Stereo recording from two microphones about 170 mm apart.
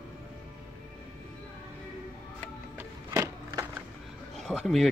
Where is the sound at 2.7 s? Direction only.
15° right (ahead or behind).